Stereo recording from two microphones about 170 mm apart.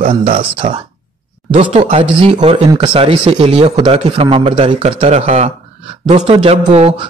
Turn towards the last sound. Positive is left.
turn(degrees=-35)  # may be behind; listen again after turning